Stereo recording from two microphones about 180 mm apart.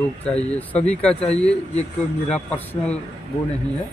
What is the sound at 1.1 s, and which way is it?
Speech, 35° left (ahead or behind).